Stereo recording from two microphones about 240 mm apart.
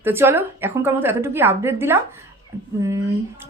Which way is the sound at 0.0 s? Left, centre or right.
Centre.